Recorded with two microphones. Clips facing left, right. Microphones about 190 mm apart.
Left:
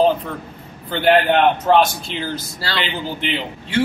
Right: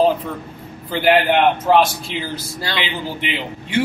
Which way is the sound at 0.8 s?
Centre (ahead or behind).